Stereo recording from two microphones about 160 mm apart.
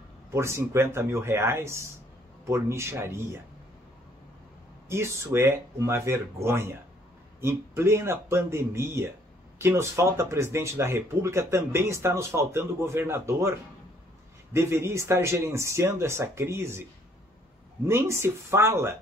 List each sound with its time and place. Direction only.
0.3 s speech: 15° right (ahead or behind)
4.8 s speech: 15° right (ahead or behind)
17.8 s speech: 15° right (ahead or behind)